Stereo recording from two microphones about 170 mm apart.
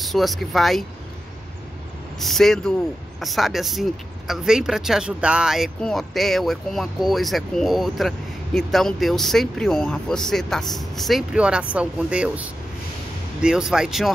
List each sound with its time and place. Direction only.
0.0 s speech: centre (ahead or behind)
2.1 s speech: centre (ahead or behind)